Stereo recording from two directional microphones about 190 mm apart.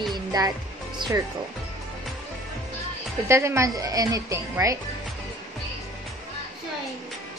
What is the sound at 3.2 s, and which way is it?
A woman's voice, 15° right (ahead or behind).